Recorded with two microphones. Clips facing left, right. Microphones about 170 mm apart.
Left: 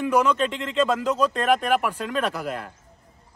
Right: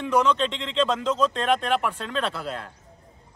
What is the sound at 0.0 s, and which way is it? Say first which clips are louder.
Speech: left 1 dB; 10° left (ahead or behind).